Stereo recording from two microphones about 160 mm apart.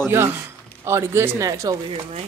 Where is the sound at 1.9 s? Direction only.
40° right (ahead or behind).